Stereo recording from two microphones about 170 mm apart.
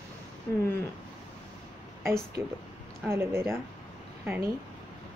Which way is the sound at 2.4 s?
15° right (ahead or behind).